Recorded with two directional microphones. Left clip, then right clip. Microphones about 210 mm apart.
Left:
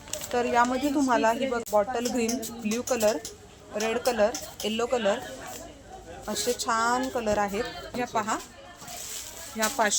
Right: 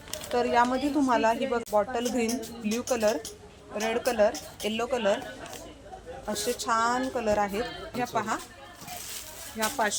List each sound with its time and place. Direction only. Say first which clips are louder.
0.1 s a woman's voice: even; 5° left (ahead or behind)
6.2 s a woman's voice: left 1 dB; 5° left (ahead or behind)
9.6 s speech: left 2 dB; 20° left (ahead or behind)